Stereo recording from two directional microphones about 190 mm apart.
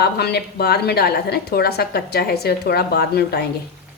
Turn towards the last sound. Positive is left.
turn(degrees=55)  # may be behind; listen again after turning